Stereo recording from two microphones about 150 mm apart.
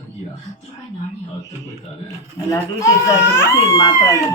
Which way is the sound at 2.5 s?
20° left (ahead or behind).